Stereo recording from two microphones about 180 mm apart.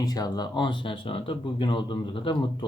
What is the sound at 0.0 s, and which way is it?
Speech, 20° left (ahead or behind).